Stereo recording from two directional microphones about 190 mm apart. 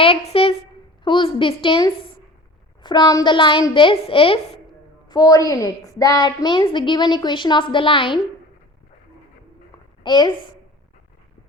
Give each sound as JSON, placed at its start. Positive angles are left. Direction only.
{"t": 0.0, "sound": "a woman's voice", "side_deg": 30}
{"t": 10.0, "sound": "a woman's voice", "side_deg": 25}